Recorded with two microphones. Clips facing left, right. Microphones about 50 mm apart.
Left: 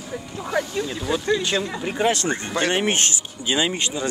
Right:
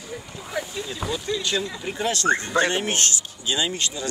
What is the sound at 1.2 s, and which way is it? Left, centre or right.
Speech, left.